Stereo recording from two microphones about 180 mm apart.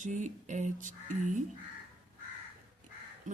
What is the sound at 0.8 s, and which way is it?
Chicken, 45° right (ahead or behind).